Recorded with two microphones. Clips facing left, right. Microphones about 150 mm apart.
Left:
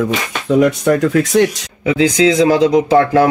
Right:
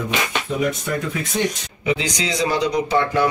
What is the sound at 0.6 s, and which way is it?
Speech, 75° left (ahead or behind).